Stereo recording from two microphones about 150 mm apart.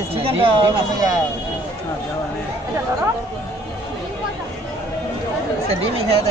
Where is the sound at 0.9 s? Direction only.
25° right (ahead or behind).